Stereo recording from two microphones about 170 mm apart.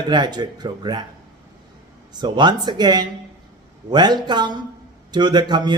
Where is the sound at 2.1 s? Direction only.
25° right (ahead or behind).